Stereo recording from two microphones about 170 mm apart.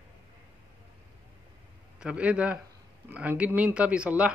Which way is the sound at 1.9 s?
5° right (ahead or behind).